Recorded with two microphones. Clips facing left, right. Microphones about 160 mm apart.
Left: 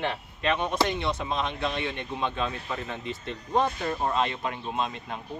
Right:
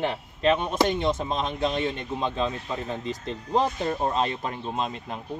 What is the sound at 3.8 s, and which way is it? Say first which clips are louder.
Speech: right 2 dB; 35° right (ahead or behind).